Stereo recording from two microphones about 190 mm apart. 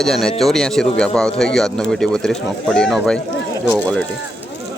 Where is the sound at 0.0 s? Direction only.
Centre (ahead or behind).